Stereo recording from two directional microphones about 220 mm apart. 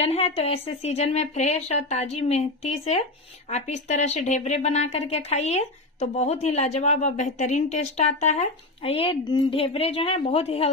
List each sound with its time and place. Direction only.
0.0 s speech: 30° left (ahead or behind)